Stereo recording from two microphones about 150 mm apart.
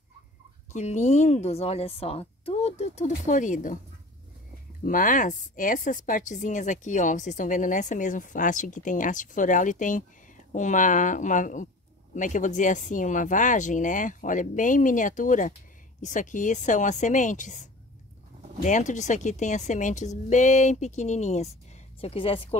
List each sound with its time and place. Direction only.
0.7 s a woman's voice: 50° left (ahead or behind)
4.8 s a woman's voice: 65° left (ahead or behind)
22.0 s speech: 40° left (ahead or behind)